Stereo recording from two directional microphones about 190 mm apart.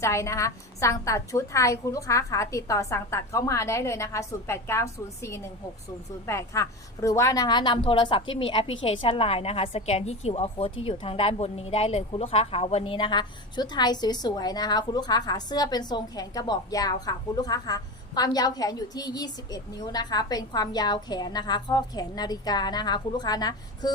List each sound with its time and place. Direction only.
0.0 s a woman's voice: 15° left (ahead or behind)